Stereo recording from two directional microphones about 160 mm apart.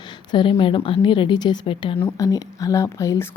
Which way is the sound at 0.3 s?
30° left (ahead or behind).